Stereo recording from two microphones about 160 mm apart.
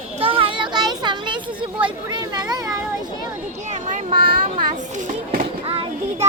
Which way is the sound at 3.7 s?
55° right (ahead or behind).